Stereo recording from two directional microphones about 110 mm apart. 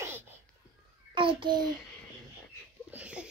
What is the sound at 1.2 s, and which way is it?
Speech, 50° right (ahead or behind).